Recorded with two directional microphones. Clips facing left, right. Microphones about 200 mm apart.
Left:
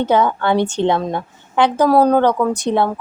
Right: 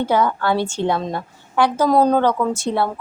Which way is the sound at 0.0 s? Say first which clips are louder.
Left 3 dB; 20° left (ahead or behind).